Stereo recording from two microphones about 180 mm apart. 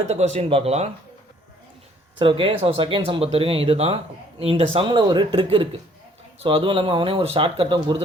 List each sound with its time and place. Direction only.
0.3 s speech: 30° right (ahead or behind)
2.1 s speech: 30° right (ahead or behind)